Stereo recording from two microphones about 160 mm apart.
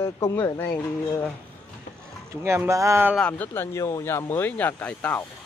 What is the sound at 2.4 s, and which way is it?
Speech, 15° right (ahead or behind).